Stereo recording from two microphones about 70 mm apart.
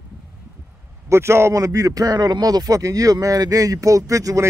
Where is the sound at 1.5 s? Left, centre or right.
Right.